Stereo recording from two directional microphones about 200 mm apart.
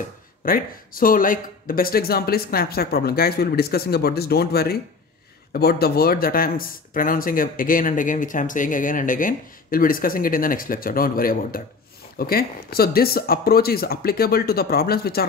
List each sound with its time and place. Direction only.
0.5 s speech: 45° left (ahead or behind)